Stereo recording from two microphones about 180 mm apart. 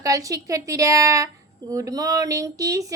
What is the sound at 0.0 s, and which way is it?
A woman's voice, 20° right (ahead or behind).